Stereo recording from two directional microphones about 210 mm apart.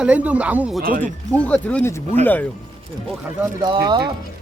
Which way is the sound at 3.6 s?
20° right (ahead or behind).